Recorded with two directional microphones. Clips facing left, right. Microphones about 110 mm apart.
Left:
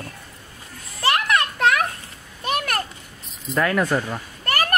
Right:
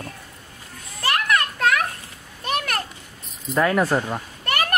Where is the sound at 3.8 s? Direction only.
25° right (ahead or behind).